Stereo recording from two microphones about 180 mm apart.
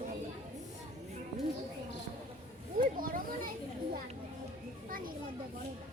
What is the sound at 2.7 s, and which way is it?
Children playing, 50° right (ahead or behind).